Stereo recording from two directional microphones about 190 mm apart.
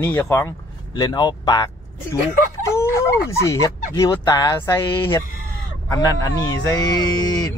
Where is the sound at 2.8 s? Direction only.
15° left (ahead or behind).